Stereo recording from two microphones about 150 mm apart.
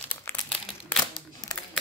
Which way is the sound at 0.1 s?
15° left (ahead or behind).